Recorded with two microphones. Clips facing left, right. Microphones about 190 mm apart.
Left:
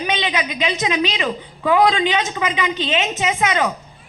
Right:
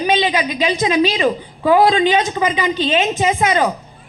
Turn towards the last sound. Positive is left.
turn(degrees=-35)  # may be behind; listen again after turning